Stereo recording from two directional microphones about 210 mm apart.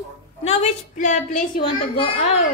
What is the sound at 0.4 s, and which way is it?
A woman's voice, 30° left (ahead or behind).